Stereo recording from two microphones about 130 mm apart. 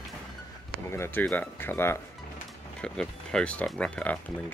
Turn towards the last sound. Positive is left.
turn(degrees=10)  # may be behind; listen again after turning